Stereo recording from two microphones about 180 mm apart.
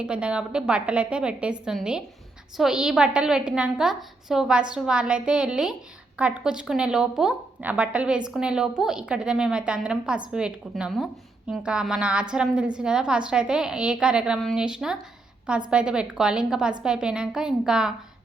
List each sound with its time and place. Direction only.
0.0 s a woman's voice: 5° right (ahead or behind)